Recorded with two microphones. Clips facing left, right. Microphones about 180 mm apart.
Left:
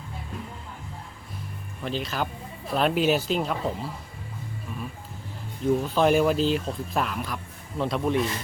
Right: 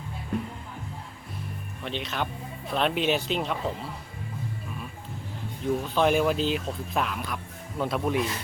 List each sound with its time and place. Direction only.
0.3 s speech: 65° right (ahead or behind)
1.8 s speech: centre (ahead or behind)
5.9 s speech: centre (ahead or behind)